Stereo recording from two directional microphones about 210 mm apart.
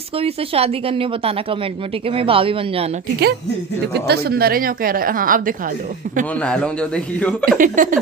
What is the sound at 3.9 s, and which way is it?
A woman's voice, 50° right (ahead or behind).